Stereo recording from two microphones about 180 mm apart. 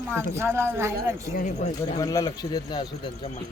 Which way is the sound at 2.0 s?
20° left (ahead or behind).